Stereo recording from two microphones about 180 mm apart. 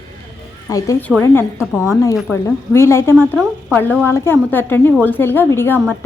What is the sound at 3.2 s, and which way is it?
Speech, centre (ahead or behind).